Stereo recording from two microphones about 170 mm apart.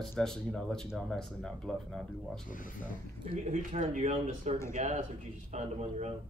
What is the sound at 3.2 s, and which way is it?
Speech, 45° right (ahead or behind).